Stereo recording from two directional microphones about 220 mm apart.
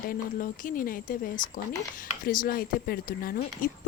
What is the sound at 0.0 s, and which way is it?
A woman's voice, 40° left (ahead or behind).